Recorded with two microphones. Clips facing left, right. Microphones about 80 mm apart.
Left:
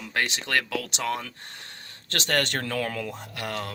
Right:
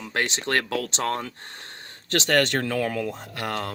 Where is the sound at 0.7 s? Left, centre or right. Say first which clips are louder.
Right 3 dB; right.